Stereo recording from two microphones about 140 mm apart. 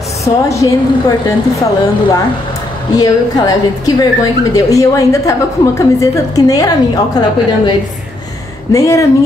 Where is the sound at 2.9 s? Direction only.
25° left (ahead or behind).